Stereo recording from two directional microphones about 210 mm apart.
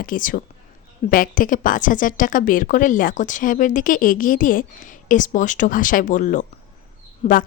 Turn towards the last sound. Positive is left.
turn(degrees=40)  # may be behind; listen again after turning